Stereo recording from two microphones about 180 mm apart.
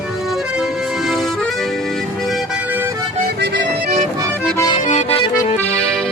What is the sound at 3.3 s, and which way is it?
Accordion, 65° right (ahead or behind).